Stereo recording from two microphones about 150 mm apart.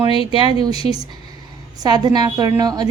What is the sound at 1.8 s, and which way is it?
A woman's voice, 30° right (ahead or behind).